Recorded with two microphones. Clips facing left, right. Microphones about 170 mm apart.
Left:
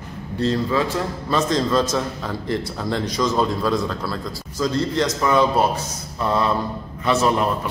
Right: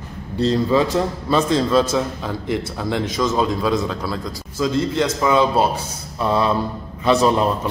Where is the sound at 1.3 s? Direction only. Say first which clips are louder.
Right 1 dB; 10° right (ahead or behind).